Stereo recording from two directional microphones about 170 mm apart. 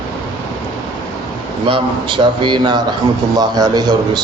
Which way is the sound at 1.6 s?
30° right (ahead or behind).